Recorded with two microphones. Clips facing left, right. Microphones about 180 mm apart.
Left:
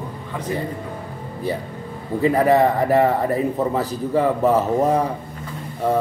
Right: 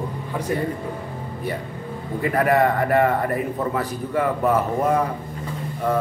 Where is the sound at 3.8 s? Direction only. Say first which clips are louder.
Left 3 dB; 35° left (ahead or behind).